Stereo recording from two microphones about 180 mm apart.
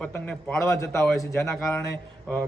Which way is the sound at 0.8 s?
15° left (ahead or behind).